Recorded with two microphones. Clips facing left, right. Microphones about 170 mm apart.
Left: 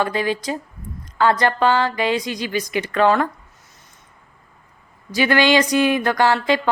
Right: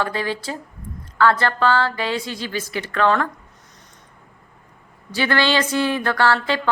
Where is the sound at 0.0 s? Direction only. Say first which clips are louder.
Left 3 dB; 15° left (ahead or behind).